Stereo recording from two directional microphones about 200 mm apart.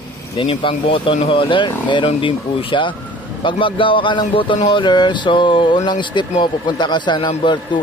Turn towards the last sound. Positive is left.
turn(degrees=25)  # may be behind; listen again after turning